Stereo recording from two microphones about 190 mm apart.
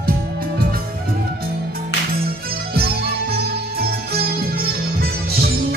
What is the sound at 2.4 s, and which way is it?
Music, 55° right (ahead or behind).